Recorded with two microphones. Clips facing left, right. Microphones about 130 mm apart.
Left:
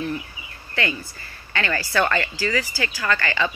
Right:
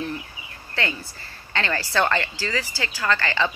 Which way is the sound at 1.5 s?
30° right (ahead or behind).